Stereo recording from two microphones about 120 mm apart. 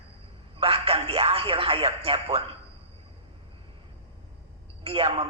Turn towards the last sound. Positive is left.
turn(degrees=-50)  # may be behind; listen again after turning